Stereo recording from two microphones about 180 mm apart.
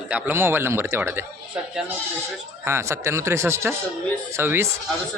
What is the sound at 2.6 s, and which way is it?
Speech, 15° right (ahead or behind).